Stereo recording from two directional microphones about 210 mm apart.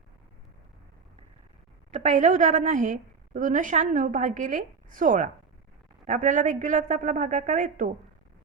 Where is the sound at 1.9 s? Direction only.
35° right (ahead or behind).